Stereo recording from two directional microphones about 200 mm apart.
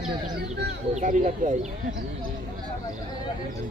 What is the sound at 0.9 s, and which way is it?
Speech, 40° right (ahead or behind).